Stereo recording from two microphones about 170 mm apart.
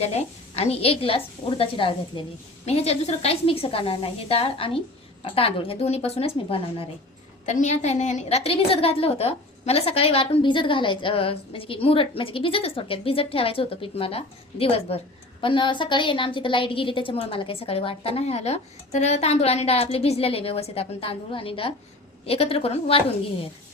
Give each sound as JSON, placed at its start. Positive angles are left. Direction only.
{"t": 0.0, "sound": "a woman's voice", "side_deg": 40}
{"t": 7.4, "sound": "a woman's voice", "side_deg": 45}